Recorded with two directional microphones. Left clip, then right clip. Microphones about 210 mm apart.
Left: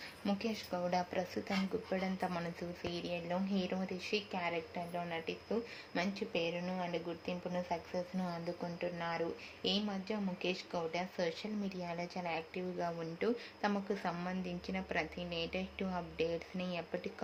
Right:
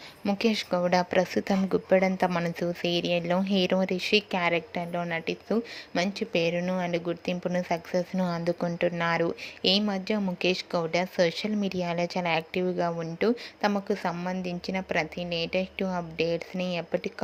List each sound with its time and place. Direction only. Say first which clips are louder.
0.3 s speech: right 13 dB; 35° right (ahead or behind)